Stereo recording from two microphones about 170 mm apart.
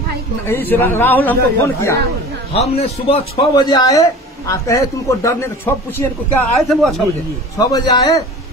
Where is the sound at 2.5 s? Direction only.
35° left (ahead or behind); by 5.7 s 15° left (ahead or behind).